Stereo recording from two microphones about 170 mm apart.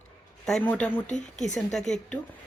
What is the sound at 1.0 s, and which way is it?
Speech, 45° left (ahead or behind).